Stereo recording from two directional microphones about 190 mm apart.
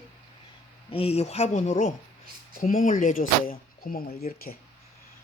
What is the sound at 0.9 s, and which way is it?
Speech, 30° left (ahead or behind).